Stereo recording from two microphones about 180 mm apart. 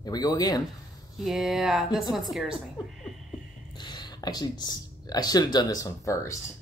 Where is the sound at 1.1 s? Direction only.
Centre (ahead or behind).